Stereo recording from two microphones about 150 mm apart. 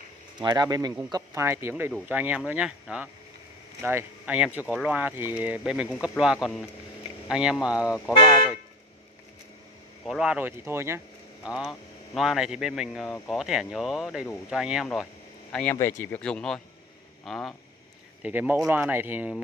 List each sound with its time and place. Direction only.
0.4 s speech: 25° right (ahead or behind); by 8.0 s 5° right (ahead or behind)
10.0 s speech: 5° right (ahead or behind)
11.4 s speech: 5° right (ahead or behind)
18.2 s speech: 10° right (ahead or behind)